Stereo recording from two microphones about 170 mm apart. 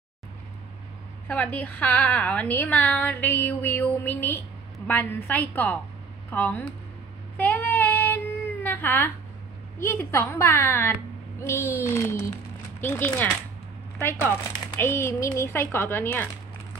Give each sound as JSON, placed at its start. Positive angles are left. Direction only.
{"t": 1.2, "sound": "a woman's voice", "side_deg": 10}
{"t": 7.3, "sound": "child singing", "side_deg": 10}
{"t": 8.6, "sound": "baby cry", "side_deg": 15}
{"t": 9.8, "sound": "a woman's voice", "side_deg": 15}